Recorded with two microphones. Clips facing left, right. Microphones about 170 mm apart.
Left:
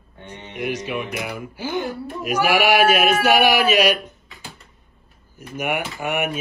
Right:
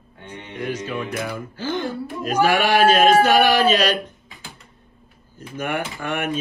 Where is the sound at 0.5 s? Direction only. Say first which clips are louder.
Left 1 dB; 10° left (ahead or behind).